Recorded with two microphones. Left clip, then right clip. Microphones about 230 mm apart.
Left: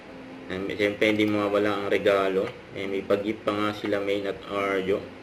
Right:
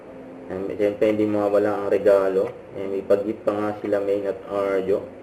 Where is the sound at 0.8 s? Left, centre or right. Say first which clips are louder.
Right 3 dB; left.